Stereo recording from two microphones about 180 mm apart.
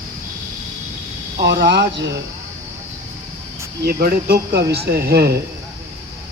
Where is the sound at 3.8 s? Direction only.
60° right (ahead or behind).